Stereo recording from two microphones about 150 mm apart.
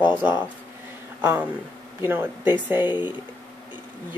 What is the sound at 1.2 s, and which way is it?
Speech, 10° right (ahead or behind).